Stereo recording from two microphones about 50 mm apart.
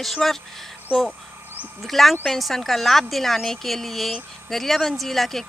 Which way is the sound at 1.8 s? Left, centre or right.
Centre.